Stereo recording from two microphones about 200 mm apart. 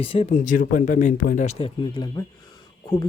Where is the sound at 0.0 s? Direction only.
30° left (ahead or behind).